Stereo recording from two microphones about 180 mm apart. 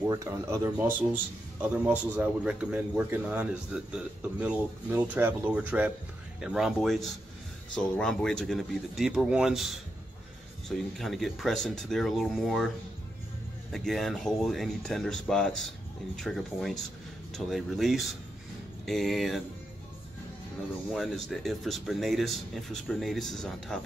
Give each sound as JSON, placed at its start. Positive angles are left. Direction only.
{"t": 0.0, "sound": "speech", "side_deg": -15}
{"t": 13.7, "sound": "speech", "side_deg": 0}
{"t": 20.9, "sound": "speech", "side_deg": 0}